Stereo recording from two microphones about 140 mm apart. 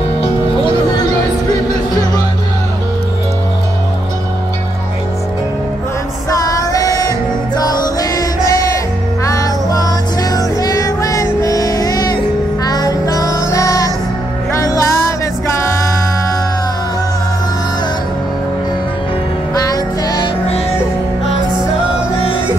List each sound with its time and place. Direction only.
0.2 s music: 35° left (ahead or behind)
6.4 s music: 25° left (ahead or behind)
19.5 s music: 25° left (ahead or behind)